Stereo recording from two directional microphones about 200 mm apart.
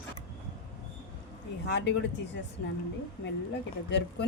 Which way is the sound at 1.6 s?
60° left (ahead or behind).